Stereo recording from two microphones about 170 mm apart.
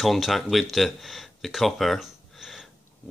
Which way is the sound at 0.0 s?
Centre (ahead or behind).